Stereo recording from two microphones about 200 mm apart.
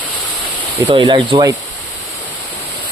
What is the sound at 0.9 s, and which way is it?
Speech, 25° right (ahead or behind).